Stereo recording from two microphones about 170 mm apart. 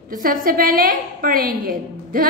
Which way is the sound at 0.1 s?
55° right (ahead or behind).